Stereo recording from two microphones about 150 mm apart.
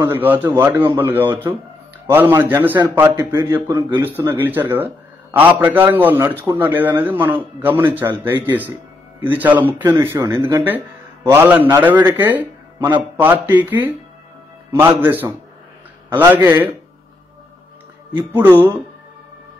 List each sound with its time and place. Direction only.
0.0 s a man's voice: 15° right (ahead or behind)
18.1 s a man's voice: 15° right (ahead or behind)